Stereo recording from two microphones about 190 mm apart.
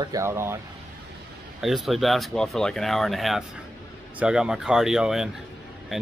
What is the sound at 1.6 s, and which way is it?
Speech, centre (ahead or behind).